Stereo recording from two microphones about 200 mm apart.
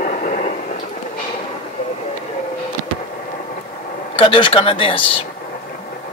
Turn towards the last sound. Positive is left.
turn(degrees=25)  # may be behind; listen again after turning